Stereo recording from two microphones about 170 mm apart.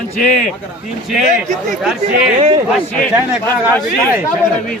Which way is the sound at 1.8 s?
5° right (ahead or behind).